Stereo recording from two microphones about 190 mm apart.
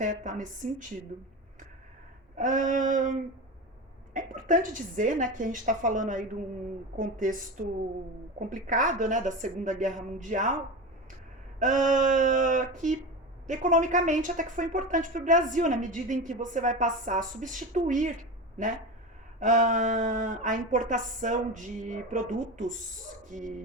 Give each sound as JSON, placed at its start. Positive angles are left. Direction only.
{"t": 0.0, "sound": "a woman's voice", "side_deg": -40}
{"t": 2.3, "sound": "a woman's voice", "side_deg": -40}
{"t": 11.6, "sound": "a woman's voice", "side_deg": -40}
{"t": 19.4, "sound": "a woman's voice", "side_deg": -40}